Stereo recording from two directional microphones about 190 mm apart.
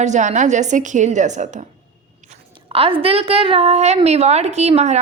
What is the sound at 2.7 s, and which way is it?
A woman's voice, 30° right (ahead or behind).